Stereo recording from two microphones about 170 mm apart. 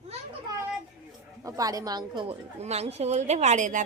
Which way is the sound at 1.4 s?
20° right (ahead or behind).